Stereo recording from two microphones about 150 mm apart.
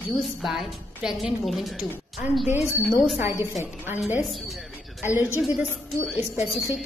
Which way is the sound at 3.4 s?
15° right (ahead or behind).